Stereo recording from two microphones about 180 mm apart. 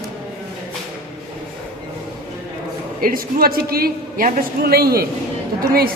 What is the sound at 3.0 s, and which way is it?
A man's voice, 55° right (ahead or behind).